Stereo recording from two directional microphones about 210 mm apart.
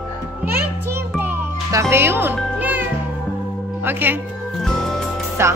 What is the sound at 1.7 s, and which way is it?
A child's voice, 15° right (ahead or behind).